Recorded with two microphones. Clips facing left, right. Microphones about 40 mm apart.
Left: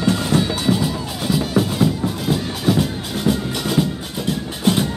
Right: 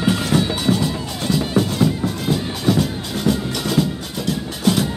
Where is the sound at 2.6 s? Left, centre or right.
Centre.